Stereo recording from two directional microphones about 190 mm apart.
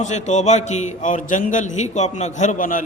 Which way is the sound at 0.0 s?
40° left (ahead or behind).